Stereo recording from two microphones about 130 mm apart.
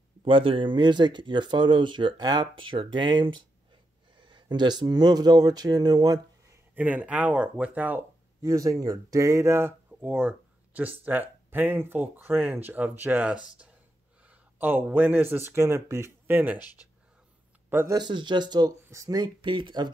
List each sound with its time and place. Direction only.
0.2 s speech: 45° right (ahead or behind)
6.7 s speech: 10° right (ahead or behind)
8.4 s speech: 25° right (ahead or behind)
16.5 s speech: 30° left (ahead or behind)
17.6 s speech: 15° right (ahead or behind)
17.9 s speech: 35° right (ahead or behind)